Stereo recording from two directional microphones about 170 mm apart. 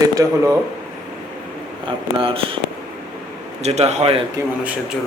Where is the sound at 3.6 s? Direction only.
40° right (ahead or behind).